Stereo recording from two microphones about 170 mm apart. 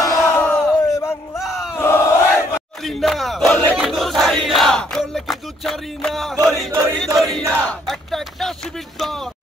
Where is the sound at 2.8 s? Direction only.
Centre (ahead or behind).